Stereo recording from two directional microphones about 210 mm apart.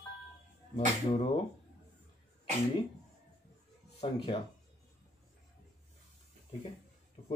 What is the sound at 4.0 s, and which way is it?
Speech, 25° left (ahead or behind).